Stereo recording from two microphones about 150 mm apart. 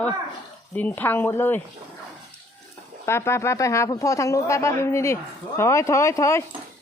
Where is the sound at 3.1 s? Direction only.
15° left (ahead or behind).